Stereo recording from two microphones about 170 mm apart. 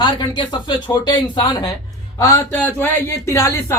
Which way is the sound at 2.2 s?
15° left (ahead or behind).